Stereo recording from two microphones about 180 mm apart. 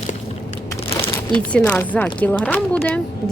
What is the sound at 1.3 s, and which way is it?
Speech, 5° left (ahead or behind).